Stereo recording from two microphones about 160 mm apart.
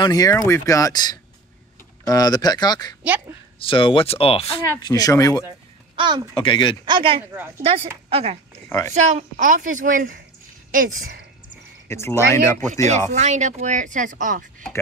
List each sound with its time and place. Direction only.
0.0 s speech: 25° left (ahead or behind); by 4.5 s 40° left (ahead or behind)
4.8 s speech: 25° left (ahead or behind)
5.9 s speech: 30° right (ahead or behind)
6.3 s speech: 30° left (ahead or behind)
6.9 s speech: 30° right (ahead or behind)
7.3 s speech: 15° right (ahead or behind)
7.6 s speech: 35° right (ahead or behind)
9.1 s speech: 55° right (ahead or behind)
11.9 s speech: 15° left (ahead or behind)
13.1 s speech: 45° right (ahead or behind)